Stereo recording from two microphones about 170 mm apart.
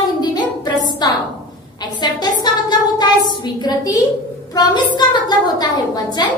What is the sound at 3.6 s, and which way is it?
Speech, 20° left (ahead or behind).